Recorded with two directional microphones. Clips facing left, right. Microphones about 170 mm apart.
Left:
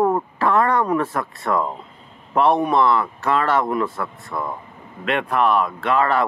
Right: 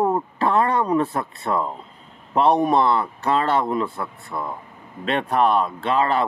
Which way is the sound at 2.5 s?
35° right (ahead or behind).